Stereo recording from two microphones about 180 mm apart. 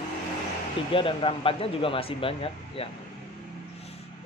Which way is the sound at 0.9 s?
30° left (ahead or behind).